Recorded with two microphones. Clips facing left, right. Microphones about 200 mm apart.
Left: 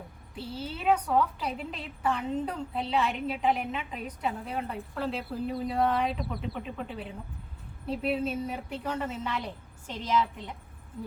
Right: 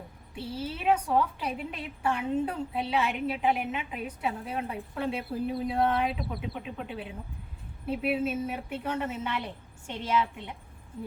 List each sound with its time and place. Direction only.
0.5 s a woman's voice: 5° right (ahead or behind)